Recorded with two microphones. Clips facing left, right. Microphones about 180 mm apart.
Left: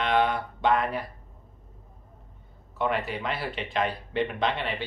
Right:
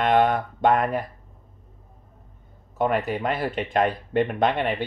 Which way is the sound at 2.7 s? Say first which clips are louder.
Right 5 dB; 45° right (ahead or behind).